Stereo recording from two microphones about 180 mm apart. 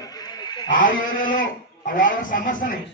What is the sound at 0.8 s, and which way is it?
A man's voice, 50° left (ahead or behind).